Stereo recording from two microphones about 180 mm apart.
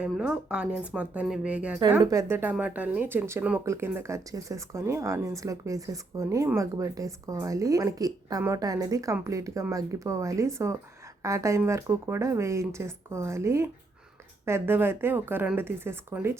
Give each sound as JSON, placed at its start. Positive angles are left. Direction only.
{"t": 0.0, "sound": "speech", "side_deg": -5}
{"t": 2.0, "sound": "speech", "side_deg": -20}